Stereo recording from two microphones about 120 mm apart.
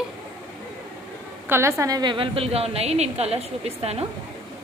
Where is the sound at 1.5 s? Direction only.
25° right (ahead or behind); by 4.0 s 60° right (ahead or behind).